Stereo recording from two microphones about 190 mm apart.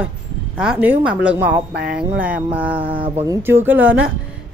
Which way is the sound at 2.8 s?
25° right (ahead or behind).